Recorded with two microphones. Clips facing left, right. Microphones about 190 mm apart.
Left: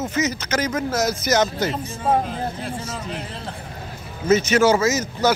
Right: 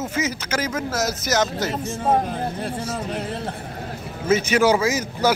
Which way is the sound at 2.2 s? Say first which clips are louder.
Right 1 dB; 50° right (ahead or behind).